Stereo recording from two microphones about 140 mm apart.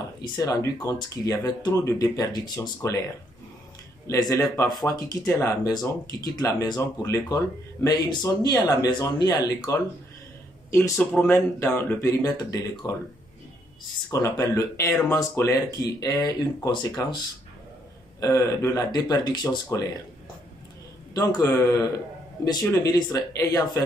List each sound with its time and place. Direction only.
0.4 s speech: 25° left (ahead or behind)
4.1 s speech: 25° left (ahead or behind)
11.0 s speech: 10° left (ahead or behind)
14.1 s speech: 25° left (ahead or behind)
18.2 s speech: 25° left (ahead or behind)
21.1 s speech: 25° left (ahead or behind)